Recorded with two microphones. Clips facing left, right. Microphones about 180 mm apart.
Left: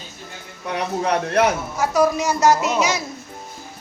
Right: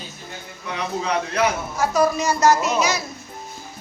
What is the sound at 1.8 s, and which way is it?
A woman's voice, 15° left (ahead or behind).